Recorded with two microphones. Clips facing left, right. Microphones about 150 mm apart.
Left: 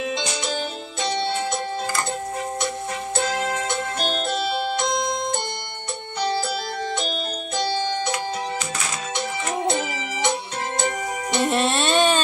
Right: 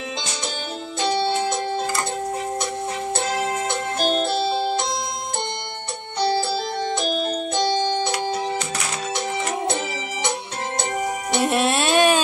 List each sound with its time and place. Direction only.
4.2 s music: 25° right (ahead or behind)
11.3 s music: 5° right (ahead or behind)